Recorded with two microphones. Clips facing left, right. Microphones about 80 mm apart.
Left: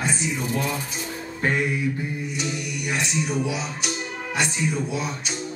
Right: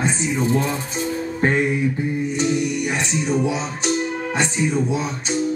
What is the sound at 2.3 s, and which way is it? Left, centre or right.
Music, right.